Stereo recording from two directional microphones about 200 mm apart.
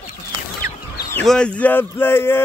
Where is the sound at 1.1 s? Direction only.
5° left (ahead or behind).